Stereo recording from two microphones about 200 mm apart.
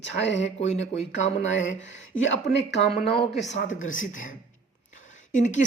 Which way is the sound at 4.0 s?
40° left (ahead or behind).